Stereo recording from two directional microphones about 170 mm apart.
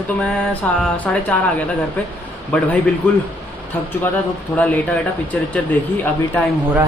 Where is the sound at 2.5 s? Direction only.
10° left (ahead or behind).